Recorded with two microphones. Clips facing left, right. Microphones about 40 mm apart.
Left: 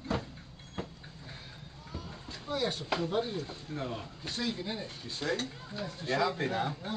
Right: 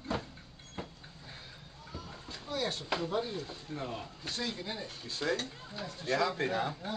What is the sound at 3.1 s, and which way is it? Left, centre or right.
Speech, centre.